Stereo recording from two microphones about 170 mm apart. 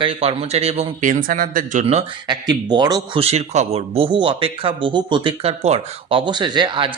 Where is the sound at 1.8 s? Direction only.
30° right (ahead or behind).